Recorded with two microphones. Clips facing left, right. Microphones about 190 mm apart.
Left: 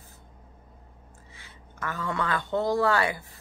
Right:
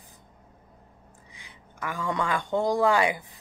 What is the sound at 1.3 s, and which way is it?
Speech, 15° right (ahead or behind).